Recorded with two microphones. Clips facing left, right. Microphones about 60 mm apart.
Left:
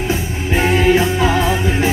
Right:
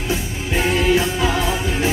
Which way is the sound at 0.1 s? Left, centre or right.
Left.